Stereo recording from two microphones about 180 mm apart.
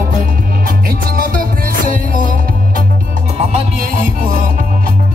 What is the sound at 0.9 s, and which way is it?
Music, 50° right (ahead or behind).